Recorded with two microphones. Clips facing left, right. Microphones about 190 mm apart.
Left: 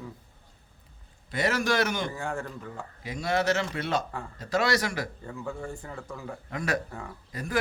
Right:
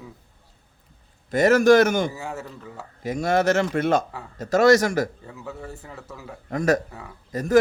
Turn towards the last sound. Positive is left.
turn(degrees=-45)  # may be behind; listen again after turning